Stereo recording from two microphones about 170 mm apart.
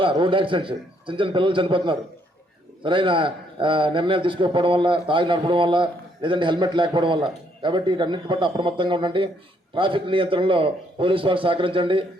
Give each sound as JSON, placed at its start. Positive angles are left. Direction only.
{"t": 0.0, "sound": "a man's voice", "side_deg": -30}